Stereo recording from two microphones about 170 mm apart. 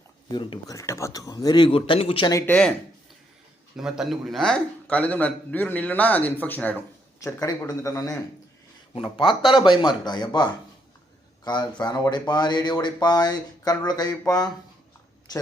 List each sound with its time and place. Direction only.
0.3 s speech: 25° left (ahead or behind)
3.8 s a man's voice: 5° right (ahead or behind); by 8.2 s 20° left (ahead or behind)
9.0 s speech: 30° left (ahead or behind)